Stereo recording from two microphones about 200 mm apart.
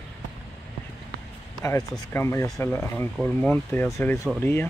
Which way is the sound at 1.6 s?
15° left (ahead or behind).